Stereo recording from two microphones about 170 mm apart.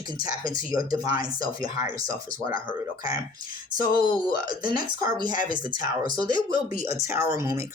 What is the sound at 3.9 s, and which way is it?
Speech, 25° right (ahead or behind).